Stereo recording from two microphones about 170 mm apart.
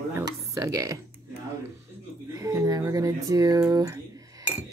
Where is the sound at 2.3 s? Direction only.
20° right (ahead or behind).